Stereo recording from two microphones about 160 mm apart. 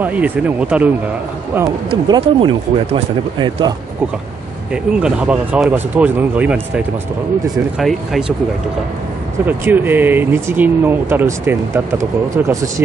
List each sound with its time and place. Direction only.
0.0 s speech: 10° right (ahead or behind)
1.9 s speech: 35° right (ahead or behind)
4.9 s speech: 5° right (ahead or behind)
7.8 s speech: centre (ahead or behind)
9.5 s speech: 10° right (ahead or behind)